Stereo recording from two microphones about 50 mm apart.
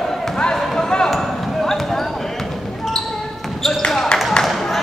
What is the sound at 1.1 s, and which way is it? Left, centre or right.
Basketball bounce, centre.